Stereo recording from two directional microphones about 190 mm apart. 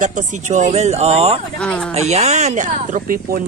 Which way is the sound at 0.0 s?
40° right (ahead or behind).